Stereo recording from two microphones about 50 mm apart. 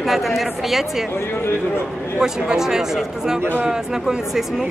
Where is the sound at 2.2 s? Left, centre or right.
Centre.